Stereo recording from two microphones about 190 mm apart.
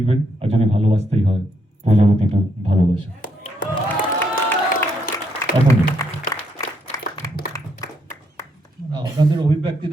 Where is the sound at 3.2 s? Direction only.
45° left (ahead or behind).